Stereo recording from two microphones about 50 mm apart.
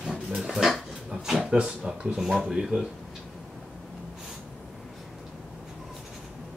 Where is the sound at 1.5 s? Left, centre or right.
Right.